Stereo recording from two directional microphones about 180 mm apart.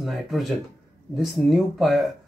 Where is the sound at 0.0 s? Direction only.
Centre (ahead or behind).